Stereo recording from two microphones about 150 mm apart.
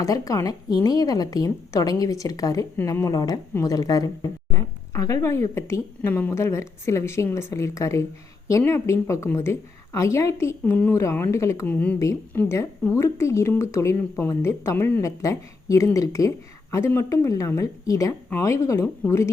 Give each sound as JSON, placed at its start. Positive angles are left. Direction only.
{"t": 0.0, "sound": "a woman's voice", "side_deg": 25}